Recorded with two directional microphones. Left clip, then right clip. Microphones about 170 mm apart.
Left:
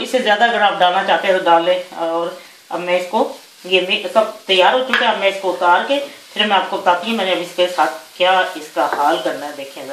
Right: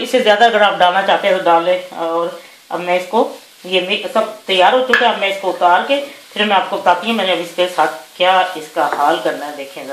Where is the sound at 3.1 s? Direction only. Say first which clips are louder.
Right 3 dB; 35° right (ahead or behind).